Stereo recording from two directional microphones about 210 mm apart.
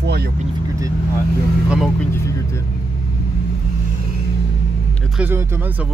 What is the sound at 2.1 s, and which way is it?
Speech, 15° left (ahead or behind).